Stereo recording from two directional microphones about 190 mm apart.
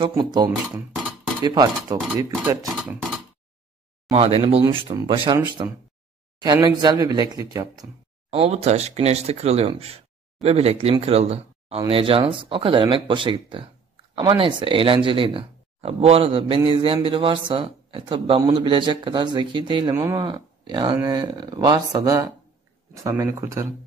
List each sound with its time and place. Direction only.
0.1 s a man's voice: 25° right (ahead or behind)
4.1 s a man's voice: 30° right (ahead or behind)